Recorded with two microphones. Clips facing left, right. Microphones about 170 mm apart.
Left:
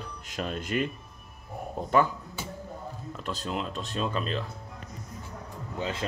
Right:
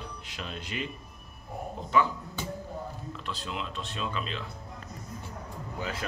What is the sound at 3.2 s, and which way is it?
A man's voice, 45° left (ahead or behind).